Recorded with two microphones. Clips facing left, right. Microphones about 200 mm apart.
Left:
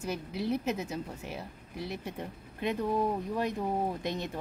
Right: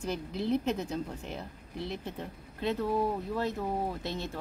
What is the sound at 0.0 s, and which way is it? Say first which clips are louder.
Speech: right 1 dB; 10° left (ahead or behind).